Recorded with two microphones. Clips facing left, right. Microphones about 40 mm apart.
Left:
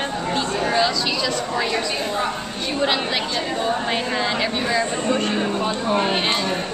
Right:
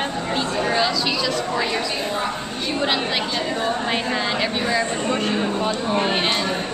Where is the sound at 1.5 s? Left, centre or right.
Centre.